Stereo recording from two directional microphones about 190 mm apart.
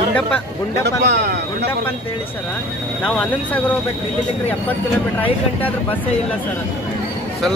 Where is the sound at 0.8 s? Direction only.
60° right (ahead or behind).